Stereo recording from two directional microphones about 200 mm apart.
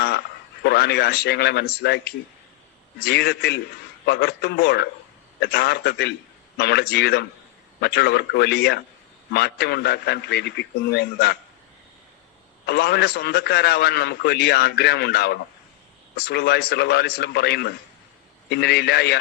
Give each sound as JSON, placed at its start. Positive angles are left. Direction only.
{"t": 0.6, "sound": "a man's voice", "side_deg": 55}
{"t": 12.6, "sound": "a man's voice", "side_deg": 55}